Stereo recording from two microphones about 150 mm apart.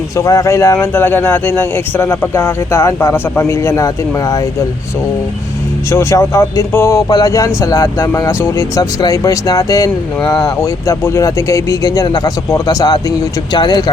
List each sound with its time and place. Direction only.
0.2 s speech: 20° left (ahead or behind)
5.9 s speech: 20° left (ahead or behind)